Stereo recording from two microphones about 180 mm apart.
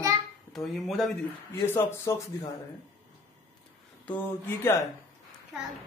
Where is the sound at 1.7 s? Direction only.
15° left (ahead or behind).